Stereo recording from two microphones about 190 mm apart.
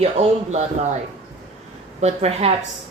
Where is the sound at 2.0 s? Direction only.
35° right (ahead or behind).